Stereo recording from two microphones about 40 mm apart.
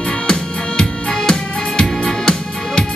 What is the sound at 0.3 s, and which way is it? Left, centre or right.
Music, centre.